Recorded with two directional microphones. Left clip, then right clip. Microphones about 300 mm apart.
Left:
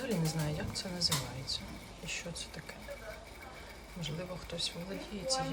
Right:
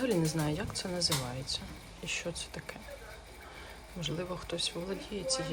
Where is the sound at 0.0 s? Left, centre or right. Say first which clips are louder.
Right 5 dB; centre.